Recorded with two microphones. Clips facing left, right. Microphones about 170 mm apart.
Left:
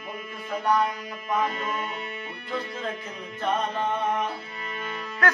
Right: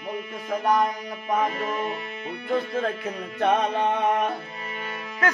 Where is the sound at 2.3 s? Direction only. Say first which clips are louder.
Right 10 dB; 55° right (ahead or behind).